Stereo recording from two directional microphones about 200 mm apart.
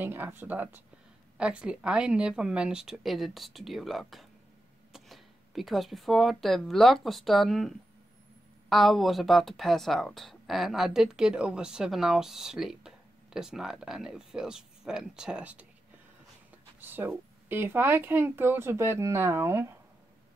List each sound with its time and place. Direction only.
0.0 s speech: 10° right (ahead or behind)
16.8 s speech: 10° right (ahead or behind)